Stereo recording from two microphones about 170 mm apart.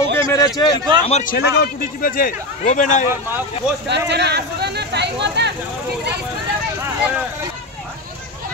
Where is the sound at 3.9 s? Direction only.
85° right.